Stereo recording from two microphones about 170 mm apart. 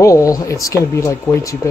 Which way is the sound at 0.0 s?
20° left (ahead or behind).